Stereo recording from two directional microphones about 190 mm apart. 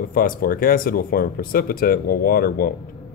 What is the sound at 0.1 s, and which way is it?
Speech, 50° left (ahead or behind).